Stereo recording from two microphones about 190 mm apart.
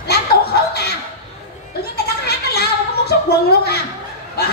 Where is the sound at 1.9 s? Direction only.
55° left (ahead or behind).